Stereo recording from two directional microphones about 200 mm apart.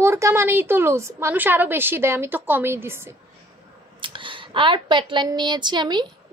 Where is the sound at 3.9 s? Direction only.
25° right (ahead or behind).